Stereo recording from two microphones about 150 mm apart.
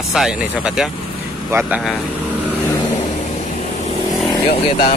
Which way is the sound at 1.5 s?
15° right (ahead or behind).